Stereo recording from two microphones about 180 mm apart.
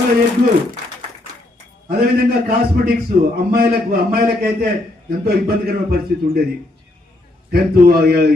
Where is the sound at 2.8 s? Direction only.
60° right (ahead or behind).